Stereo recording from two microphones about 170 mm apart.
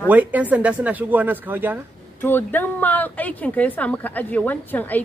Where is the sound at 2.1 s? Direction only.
10° left (ahead or behind).